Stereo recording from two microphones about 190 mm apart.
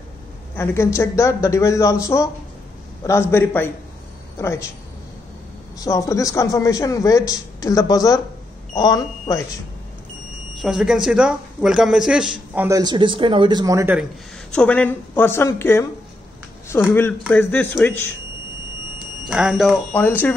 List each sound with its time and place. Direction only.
0.6 s a man's voice: 15° left (ahead or behind)
5.8 s a man's voice: 20° left (ahead or behind)
10.6 s speech: 5° right (ahead or behind)
12.6 s speech: 20° right (ahead or behind)
14.5 s a man's voice: 5° left (ahead or behind)
19.2 s speech: 5° right (ahead or behind)